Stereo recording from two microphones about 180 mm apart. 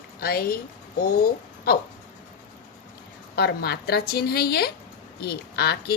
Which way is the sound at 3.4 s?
65° left (ahead or behind).